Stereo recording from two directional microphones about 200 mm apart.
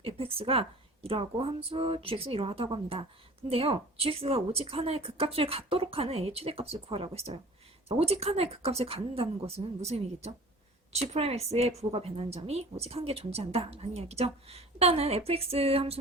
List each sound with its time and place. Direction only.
0.0 s a woman's voice: 30° right (ahead or behind)